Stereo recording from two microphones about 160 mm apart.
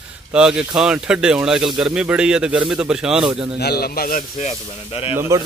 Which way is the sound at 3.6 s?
80° left.